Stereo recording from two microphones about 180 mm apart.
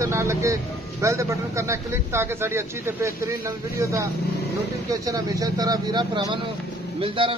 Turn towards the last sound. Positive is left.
turn(degrees=-30)  # may be behind; listen again after turning